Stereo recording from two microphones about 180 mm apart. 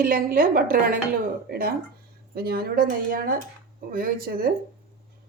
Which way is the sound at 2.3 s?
60° right (ahead or behind).